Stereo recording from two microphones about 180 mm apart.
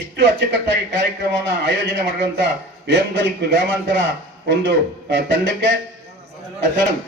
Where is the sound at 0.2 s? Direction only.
75° right (ahead or behind).